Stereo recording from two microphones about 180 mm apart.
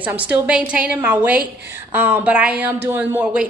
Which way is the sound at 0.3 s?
5° right (ahead or behind).